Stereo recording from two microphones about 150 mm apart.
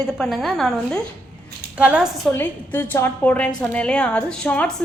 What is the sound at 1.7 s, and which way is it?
Speech, 10° right (ahead or behind).